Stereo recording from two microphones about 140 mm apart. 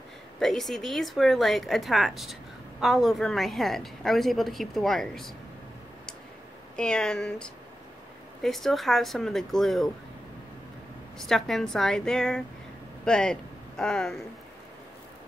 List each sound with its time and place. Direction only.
0.4 s a woman's voice: centre (ahead or behind)
6.8 s a woman's voice: 5° left (ahead or behind)
11.1 s a woman's voice: centre (ahead or behind)